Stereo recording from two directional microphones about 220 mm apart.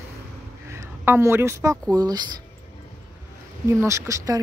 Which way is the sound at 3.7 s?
15° right (ahead or behind).